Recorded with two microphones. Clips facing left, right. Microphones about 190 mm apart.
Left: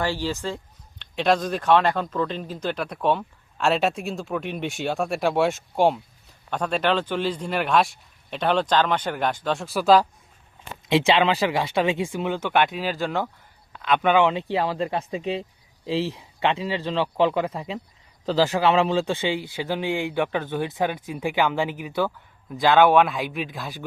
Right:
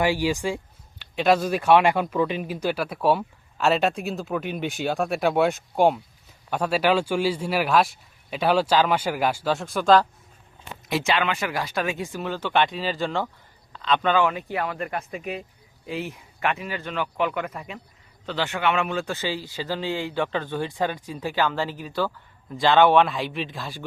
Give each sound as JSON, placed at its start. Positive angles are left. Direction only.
{"t": 0.0, "sound": "a man's voice", "side_deg": -15}
{"t": 10.8, "sound": "speech", "side_deg": 25}
{"t": 12.2, "sound": "speech", "side_deg": 15}
{"t": 18.3, "sound": "speech", "side_deg": 35}